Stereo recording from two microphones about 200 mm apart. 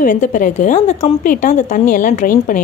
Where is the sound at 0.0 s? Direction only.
40° left (ahead or behind).